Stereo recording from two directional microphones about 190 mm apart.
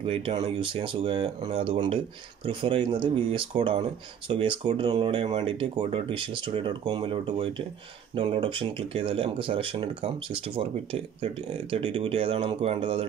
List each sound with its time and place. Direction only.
0.0 s speech: 30° right (ahead or behind)